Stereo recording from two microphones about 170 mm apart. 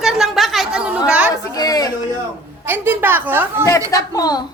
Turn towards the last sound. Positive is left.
turn(degrees=20)  # may be behind; listen again after turning